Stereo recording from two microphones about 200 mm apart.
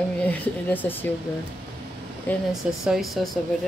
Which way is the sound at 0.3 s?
10° left (ahead or behind).